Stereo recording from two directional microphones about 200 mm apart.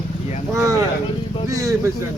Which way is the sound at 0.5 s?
15° right (ahead or behind).